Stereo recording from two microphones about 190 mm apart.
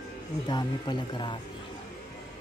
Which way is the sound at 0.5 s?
25° left (ahead or behind).